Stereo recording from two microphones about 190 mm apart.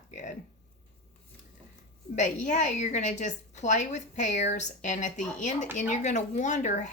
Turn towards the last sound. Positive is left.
turn(degrees=40)  # may be behind; listen again after turning